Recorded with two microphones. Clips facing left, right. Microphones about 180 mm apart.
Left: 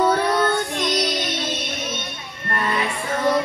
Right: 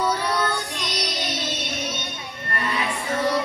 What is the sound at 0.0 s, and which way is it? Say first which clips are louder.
Child singing: left 5 dB; 50° left (ahead or behind).